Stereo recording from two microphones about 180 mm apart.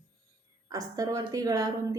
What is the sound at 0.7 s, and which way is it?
A woman's voice, 20° right (ahead or behind).